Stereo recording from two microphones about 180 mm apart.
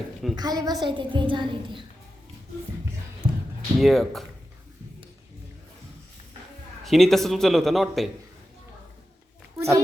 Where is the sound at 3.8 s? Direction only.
Centre (ahead or behind).